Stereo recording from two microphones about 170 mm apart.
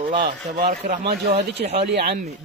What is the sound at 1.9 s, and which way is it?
Speech, 65° right (ahead or behind).